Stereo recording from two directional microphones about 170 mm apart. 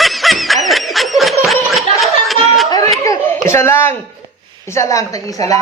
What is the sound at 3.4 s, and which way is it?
A woman's voice, 15° left (ahead or behind).